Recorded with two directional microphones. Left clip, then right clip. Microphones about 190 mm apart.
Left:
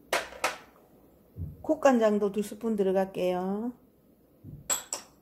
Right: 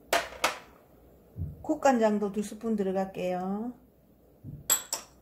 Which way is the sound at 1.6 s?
30° left (ahead or behind).